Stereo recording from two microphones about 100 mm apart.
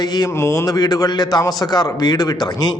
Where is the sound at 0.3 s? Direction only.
30° left (ahead or behind).